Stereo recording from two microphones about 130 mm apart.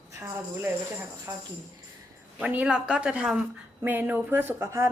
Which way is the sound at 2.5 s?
10° right (ahead or behind).